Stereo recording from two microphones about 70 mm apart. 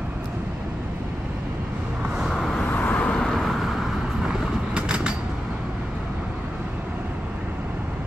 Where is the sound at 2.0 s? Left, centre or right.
Centre.